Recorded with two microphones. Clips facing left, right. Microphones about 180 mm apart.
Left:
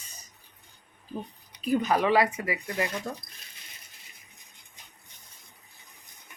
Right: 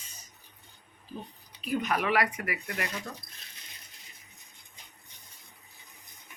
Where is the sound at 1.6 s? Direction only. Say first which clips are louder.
Left 5 dB; 35° left (ahead or behind).